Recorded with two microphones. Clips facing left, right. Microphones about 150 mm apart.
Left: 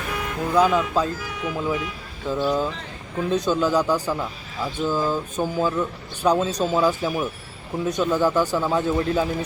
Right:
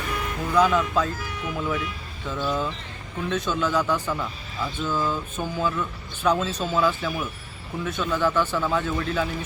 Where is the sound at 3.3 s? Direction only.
40° left (ahead or behind).